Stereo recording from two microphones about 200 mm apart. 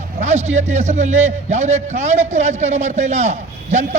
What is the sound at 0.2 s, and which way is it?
A man's voice, 35° right (ahead or behind).